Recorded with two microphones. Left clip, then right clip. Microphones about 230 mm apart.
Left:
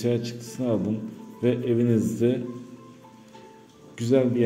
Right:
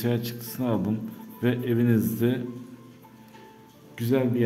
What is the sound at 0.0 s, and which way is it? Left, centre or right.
A man's voice, centre.